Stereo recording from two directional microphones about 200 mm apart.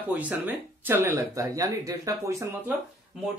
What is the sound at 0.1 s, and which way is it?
Speech, 5° right (ahead or behind).